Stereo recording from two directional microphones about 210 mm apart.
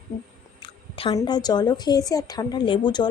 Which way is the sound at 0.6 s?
25° left (ahead or behind).